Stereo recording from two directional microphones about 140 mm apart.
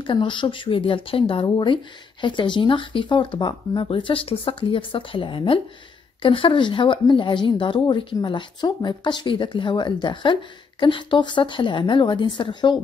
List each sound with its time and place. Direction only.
0.0 s speech: 35° left (ahead or behind)